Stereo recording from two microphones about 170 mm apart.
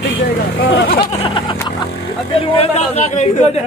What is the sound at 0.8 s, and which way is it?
Speech, 30° left (ahead or behind).